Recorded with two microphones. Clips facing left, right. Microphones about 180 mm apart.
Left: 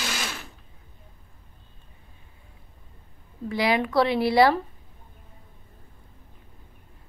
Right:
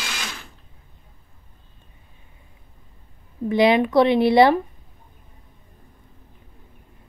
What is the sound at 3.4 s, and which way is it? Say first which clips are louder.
A woman's voice: right 7 dB; 20° right (ahead or behind).